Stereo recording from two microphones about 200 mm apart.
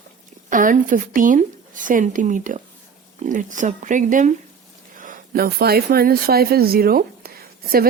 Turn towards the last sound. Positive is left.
turn(degrees=-50)  # may be behind; listen again after turning